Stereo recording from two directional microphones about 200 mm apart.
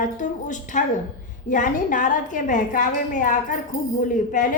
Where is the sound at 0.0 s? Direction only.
40° left (ahead or behind).